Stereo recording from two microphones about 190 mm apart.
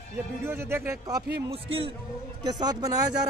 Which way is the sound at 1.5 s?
30° right (ahead or behind).